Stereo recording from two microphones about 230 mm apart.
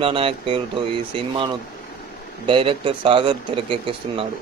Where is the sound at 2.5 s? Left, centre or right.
Right.